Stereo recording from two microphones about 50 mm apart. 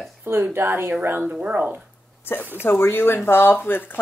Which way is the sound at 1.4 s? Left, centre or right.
Right.